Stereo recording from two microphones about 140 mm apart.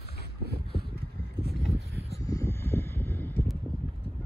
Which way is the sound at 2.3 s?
20° left (ahead or behind).